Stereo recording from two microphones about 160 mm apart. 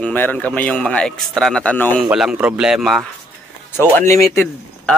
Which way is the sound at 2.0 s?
5° right (ahead or behind).